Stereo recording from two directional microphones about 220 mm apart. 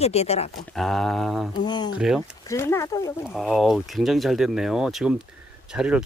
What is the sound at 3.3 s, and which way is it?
Speech, centre (ahead or behind).